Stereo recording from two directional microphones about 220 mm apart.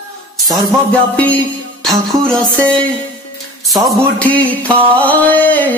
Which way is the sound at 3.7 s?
5° left (ahead or behind).